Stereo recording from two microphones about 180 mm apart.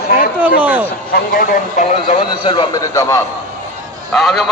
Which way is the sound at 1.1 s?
55° left (ahead or behind).